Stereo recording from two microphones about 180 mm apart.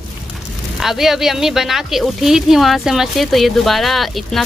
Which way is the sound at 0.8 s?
Centre (ahead or behind).